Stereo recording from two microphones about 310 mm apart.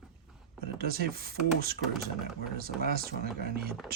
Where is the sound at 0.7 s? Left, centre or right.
Right.